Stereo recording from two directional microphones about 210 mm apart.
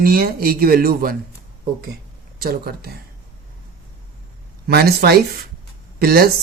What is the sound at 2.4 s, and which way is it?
Speech, 45° right (ahead or behind).